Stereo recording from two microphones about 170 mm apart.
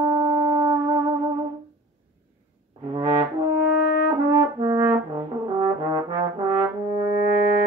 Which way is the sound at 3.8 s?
65° left (ahead or behind).